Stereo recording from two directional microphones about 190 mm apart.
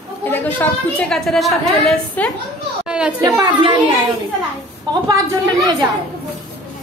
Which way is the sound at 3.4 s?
25° right (ahead or behind).